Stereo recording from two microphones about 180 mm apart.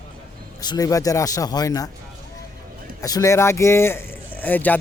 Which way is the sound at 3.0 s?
20° left (ahead or behind).